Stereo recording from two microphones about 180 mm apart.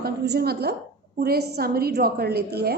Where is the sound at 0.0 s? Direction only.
60° right (ahead or behind).